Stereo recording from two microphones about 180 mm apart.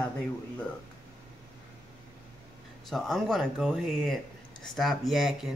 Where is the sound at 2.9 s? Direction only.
Centre (ahead or behind).